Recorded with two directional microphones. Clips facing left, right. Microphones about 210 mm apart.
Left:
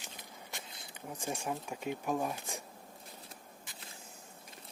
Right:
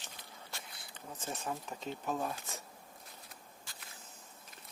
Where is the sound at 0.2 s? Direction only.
15° left (ahead or behind).